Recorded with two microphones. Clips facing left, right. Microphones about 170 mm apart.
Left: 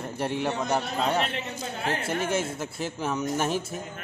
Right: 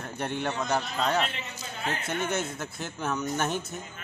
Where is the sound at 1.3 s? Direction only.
55° left (ahead or behind).